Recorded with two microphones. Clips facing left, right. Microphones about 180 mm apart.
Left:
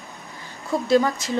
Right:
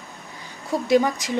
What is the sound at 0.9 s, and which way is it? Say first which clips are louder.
Speech: even; 15° right (ahead or behind).